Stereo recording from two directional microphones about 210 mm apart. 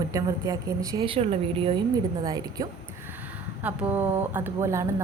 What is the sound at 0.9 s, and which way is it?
Speech, 25° right (ahead or behind).